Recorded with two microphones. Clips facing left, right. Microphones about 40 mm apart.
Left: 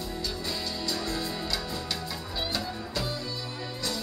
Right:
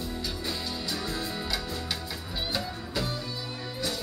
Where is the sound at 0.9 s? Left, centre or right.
Centre.